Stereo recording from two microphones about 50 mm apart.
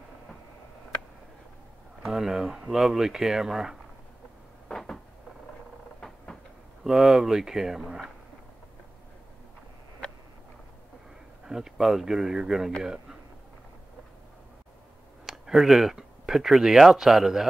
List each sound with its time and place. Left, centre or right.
2.0 s speech: centre
4.6 s cupboard open or close: centre
6.8 s speech: centre
10.0 s a sound: left
11.4 s speech: centre
12.8 s a sound: centre
15.2 s speech: centre